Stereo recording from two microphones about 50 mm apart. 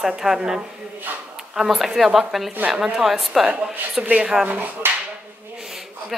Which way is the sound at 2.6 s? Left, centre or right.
Right.